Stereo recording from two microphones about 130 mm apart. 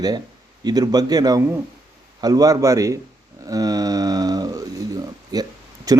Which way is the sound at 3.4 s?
30° right (ahead or behind).